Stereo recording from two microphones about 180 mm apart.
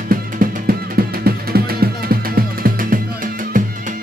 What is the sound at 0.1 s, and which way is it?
Music, 55° right (ahead or behind).